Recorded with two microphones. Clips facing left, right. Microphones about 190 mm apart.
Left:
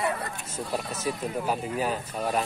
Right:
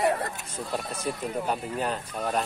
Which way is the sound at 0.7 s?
5° left (ahead or behind).